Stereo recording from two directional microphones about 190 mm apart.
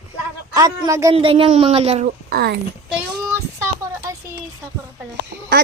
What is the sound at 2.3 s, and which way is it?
Speech, 60° right (ahead or behind).